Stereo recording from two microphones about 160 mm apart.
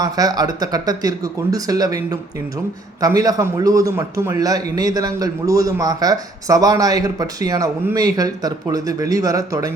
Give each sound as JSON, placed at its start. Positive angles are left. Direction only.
{"t": 0.0, "sound": "a man's voice", "side_deg": -25}
{"t": 3.2, "sound": "a man's voice", "side_deg": -25}